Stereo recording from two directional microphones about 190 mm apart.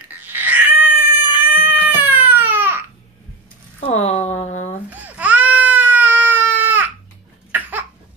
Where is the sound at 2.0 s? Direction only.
10° right (ahead or behind).